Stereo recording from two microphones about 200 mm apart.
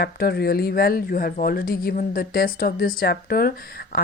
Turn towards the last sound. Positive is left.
turn(degrees=50)  # may be behind; listen again after turning